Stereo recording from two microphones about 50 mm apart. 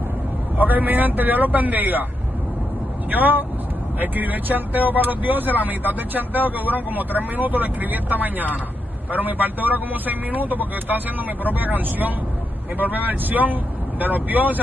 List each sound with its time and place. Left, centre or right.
0.6 s speech: right
3.1 s speech: right